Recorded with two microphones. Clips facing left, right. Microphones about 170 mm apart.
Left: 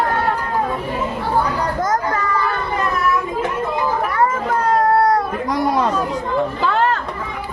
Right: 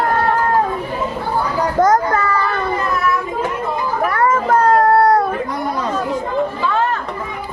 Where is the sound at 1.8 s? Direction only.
70° right (ahead or behind).